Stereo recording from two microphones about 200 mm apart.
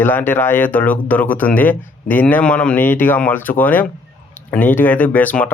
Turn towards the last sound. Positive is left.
turn(degrees=10)  # may be behind; listen again after turning